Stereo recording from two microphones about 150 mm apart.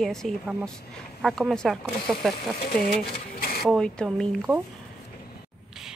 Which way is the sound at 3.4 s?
80° left.